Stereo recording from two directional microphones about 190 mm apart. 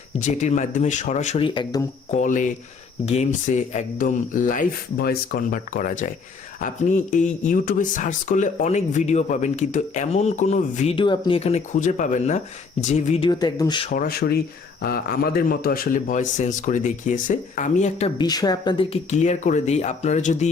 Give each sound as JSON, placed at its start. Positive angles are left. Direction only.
{"t": 0.2, "sound": "speech", "side_deg": 40}
{"t": 2.0, "sound": "a man's voice", "side_deg": 40}
{"t": 13.9, "sound": "a man's voice", "side_deg": 50}
{"t": 18.2, "sound": "speech", "side_deg": 20}